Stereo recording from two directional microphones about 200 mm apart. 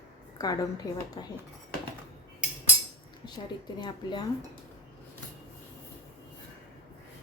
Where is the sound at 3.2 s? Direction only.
20° left (ahead or behind).